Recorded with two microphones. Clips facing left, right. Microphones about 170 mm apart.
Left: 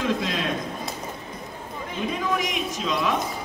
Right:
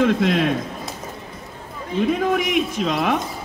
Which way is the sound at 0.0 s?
60° right (ahead or behind).